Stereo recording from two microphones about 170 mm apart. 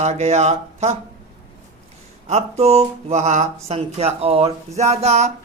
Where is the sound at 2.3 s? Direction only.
40° right (ahead or behind).